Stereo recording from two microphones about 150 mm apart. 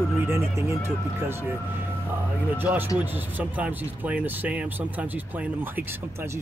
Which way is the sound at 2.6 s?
10° right (ahead or behind).